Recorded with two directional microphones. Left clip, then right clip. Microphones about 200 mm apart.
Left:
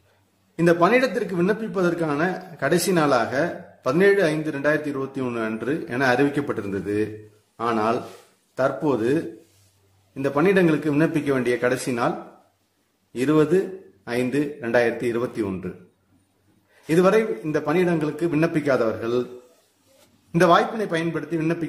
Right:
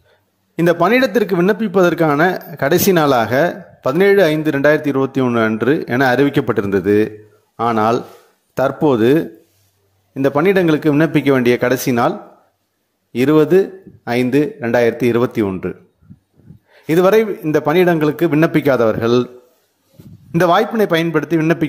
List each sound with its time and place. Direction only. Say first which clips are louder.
0.6 s a man's voice: right 5 dB; 40° right (ahead or behind)
16.8 s a man's voice: right 6 dB; 40° right (ahead or behind)
20.2 s a man's voice: right 4 dB; 40° right (ahead or behind)